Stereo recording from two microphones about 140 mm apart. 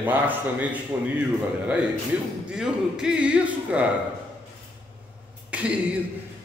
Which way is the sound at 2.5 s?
5° right (ahead or behind).